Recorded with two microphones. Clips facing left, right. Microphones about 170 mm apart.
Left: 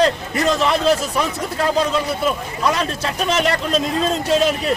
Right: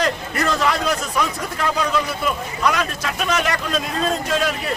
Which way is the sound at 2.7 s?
30° left (ahead or behind).